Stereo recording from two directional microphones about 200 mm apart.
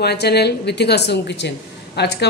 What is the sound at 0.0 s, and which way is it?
A woman's voice, 55° left (ahead or behind).